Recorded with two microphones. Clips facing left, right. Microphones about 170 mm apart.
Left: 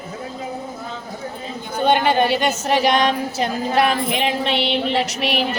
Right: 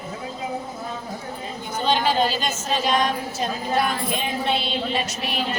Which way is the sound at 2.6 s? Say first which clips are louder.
Left 3 dB; 70° left (ahead or behind).